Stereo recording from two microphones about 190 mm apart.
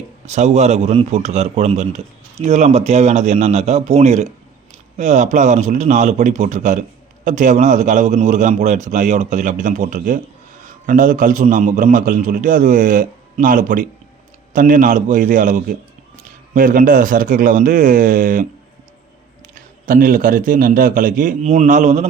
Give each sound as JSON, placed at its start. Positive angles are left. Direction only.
{"t": 0.3, "sound": "a man's voice", "side_deg": -35}
{"t": 19.5, "sound": "a man's voice", "side_deg": -45}